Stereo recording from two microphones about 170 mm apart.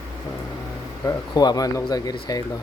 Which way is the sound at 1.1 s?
25° left (ahead or behind).